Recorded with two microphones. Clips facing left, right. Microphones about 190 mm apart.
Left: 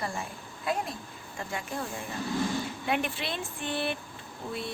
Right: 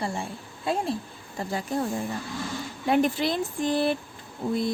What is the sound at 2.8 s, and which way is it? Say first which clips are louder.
Speech: right 11 dB; 40° right (ahead or behind).